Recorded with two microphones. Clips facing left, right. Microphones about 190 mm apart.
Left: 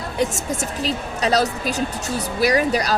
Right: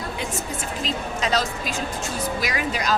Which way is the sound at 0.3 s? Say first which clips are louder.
Left 4 dB; 90° left.